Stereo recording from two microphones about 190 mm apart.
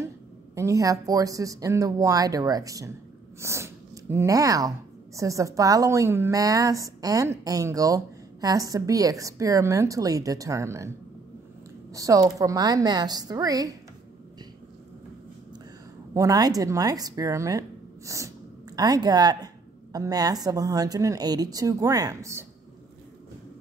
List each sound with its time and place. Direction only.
0.6 s speech: 15° right (ahead or behind)
11.9 s a woman's voice: 15° right (ahead or behind)
16.1 s a woman's voice: 20° right (ahead or behind)